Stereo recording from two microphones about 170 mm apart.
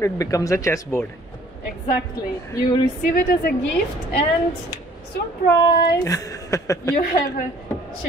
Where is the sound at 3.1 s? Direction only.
55° left (ahead or behind).